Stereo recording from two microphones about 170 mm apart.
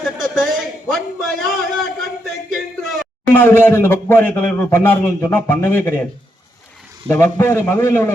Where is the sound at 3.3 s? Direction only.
15° left (ahead or behind).